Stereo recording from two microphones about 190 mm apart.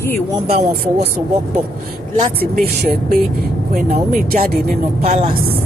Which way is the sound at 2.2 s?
50° right (ahead or behind).